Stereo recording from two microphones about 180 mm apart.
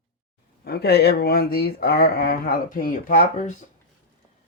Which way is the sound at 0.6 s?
60° left (ahead or behind).